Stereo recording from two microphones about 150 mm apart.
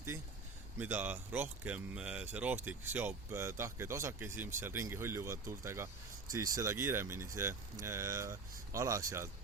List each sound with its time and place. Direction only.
0.8 s speech: 10° right (ahead or behind)